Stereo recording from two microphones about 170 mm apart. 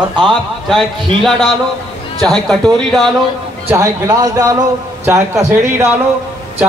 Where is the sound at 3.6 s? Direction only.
15° right (ahead or behind).